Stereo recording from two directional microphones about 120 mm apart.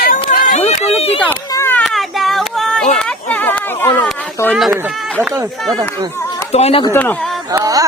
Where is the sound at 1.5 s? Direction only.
20° left (ahead or behind).